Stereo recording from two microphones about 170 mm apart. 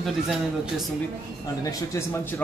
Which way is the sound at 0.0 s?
Centre (ahead or behind).